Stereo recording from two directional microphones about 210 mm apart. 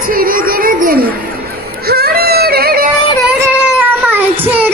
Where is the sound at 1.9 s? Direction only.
45° right (ahead or behind).